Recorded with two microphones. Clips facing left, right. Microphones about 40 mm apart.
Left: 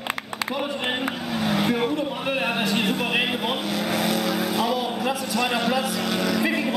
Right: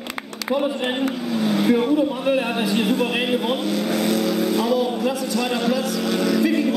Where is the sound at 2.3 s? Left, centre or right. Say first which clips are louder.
Right 3 dB; centre.